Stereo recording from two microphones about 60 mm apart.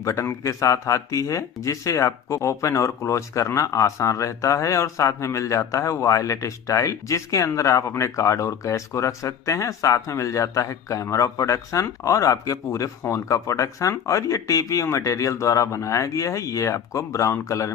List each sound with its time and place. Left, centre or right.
0.0 s speech: left